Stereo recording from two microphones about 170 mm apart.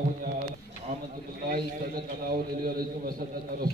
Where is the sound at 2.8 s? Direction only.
60° right (ahead or behind).